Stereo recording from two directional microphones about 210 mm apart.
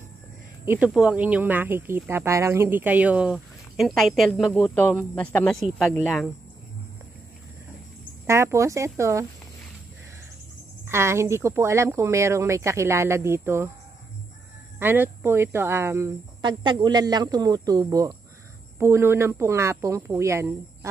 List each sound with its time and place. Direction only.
0.7 s speech: 5° right (ahead or behind)
8.3 s speech: 15° right (ahead or behind)
10.9 s speech: 10° right (ahead or behind)
14.8 s speech: 10° right (ahead or behind)